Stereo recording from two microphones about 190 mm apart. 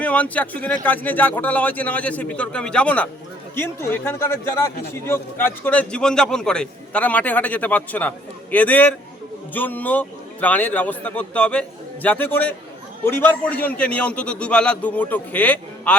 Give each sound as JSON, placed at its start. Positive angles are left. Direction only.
{"t": 0.0, "sound": "a man's voice", "side_deg": 5}